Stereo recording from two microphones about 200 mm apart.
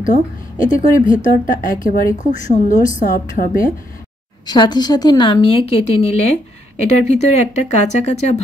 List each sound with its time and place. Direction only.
0.0 s speech: 40° left (ahead or behind)
4.5 s a woman's voice: 20° left (ahead or behind)